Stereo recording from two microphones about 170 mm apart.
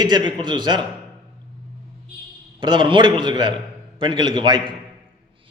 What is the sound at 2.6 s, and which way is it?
A man's voice, 25° right (ahead or behind).